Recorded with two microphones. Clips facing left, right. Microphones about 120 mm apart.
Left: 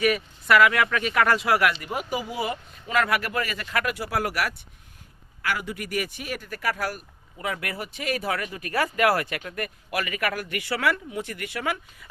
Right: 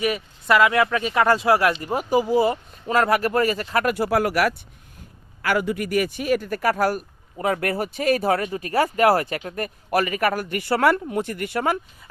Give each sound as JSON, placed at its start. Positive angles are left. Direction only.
{"t": 0.0, "sound": "speech", "side_deg": -25}